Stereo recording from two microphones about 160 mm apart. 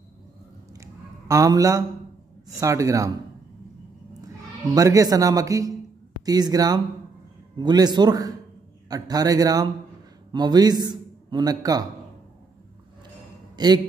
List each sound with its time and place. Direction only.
0.7 s a sound: 20° right (ahead or behind)
2.6 s speech: 20° right (ahead or behind)
4.7 s a man's voice: 20° right (ahead or behind)
13.6 s speech: 25° right (ahead or behind)